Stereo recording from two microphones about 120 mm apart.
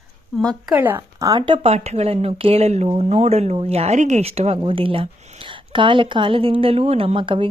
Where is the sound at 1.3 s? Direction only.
45° right (ahead or behind).